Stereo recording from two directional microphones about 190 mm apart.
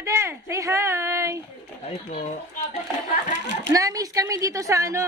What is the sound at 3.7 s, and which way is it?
Speech, 20° right (ahead or behind).